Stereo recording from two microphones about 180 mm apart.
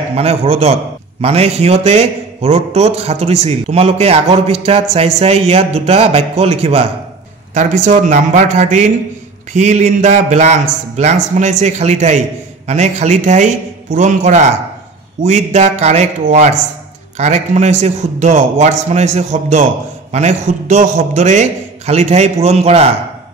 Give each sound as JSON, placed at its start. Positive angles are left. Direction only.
{"t": 0.1, "sound": "a man's voice", "side_deg": -35}
{"t": 7.5, "sound": "a man's voice", "side_deg": -45}